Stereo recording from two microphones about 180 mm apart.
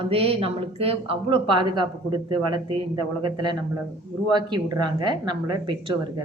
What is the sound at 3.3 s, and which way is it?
Speech, 25° right (ahead or behind).